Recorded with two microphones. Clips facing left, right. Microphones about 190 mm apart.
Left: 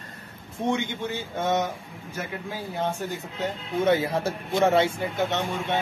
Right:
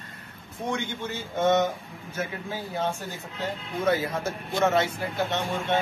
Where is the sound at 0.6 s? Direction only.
15° left (ahead or behind).